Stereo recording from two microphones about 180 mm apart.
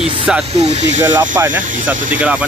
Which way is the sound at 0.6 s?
40° right (ahead or behind).